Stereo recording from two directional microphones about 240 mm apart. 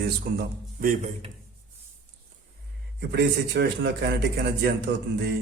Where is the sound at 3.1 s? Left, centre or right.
Right.